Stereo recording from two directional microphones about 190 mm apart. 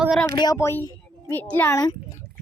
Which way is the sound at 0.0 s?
Centre (ahead or behind).